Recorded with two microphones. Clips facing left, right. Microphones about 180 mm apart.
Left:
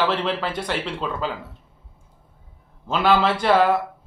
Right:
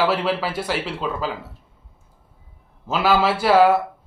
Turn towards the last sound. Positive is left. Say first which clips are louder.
# right 3 dB
turn(degrees=-5)  # may be behind; listen again after turning